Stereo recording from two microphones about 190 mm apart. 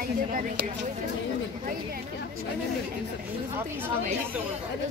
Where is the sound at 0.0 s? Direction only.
50° right (ahead or behind).